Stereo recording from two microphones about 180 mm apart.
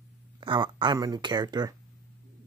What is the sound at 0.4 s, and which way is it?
Speech, 25° right (ahead or behind).